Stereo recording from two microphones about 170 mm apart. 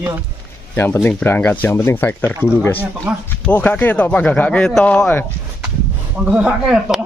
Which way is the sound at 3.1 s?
5° right (ahead or behind).